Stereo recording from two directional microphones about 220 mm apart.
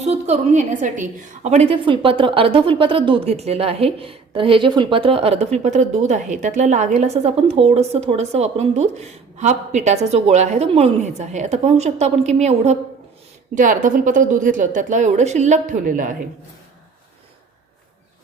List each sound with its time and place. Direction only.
0.0 s a woman's voice: 30° right (ahead or behind)